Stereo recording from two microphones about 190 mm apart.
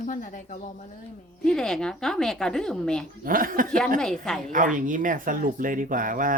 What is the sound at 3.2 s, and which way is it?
Speech, 45° right (ahead or behind).